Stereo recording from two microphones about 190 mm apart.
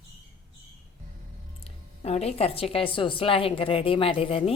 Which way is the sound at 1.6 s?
30° left (ahead or behind).